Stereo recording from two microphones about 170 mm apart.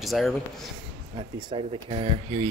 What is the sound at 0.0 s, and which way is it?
Speech, centre (ahead or behind).